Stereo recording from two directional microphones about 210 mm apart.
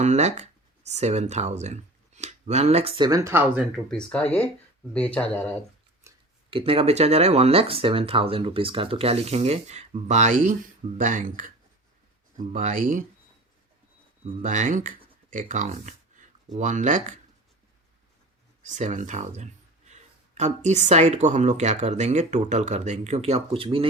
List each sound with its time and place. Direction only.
0.0 s speech: 30° right (ahead or behind); by 5.5 s 5° left (ahead or behind)
6.5 s speech: 25° right (ahead or behind)
14.4 s speech: 35° right (ahead or behind)
18.6 s speech: 35° right (ahead or behind)